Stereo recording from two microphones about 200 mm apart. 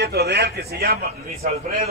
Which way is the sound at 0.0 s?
55° right (ahead or behind).